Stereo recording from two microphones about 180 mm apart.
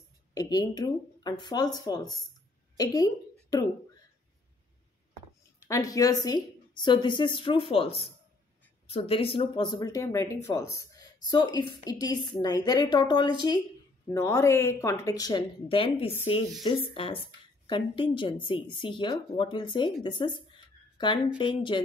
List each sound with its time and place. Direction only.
0.3 s a woman's voice: 20° left (ahead or behind)
5.7 s speech: 20° left (ahead or behind)